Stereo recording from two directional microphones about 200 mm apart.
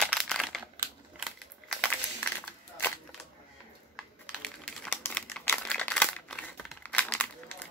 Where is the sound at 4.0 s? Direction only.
5° left (ahead or behind).